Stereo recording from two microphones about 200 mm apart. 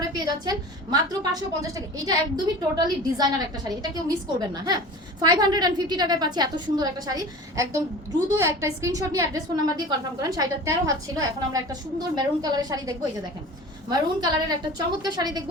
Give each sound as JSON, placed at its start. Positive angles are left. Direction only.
{"t": 0.1, "sound": "a woman's voice", "side_deg": -20}